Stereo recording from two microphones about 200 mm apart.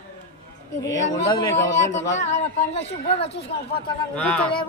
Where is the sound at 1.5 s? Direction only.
35° left (ahead or behind).